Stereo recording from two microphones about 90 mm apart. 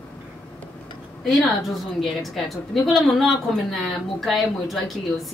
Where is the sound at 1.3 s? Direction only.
Centre (ahead or behind).